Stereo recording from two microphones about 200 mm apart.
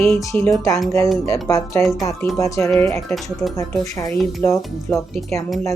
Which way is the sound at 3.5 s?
15° left (ahead or behind).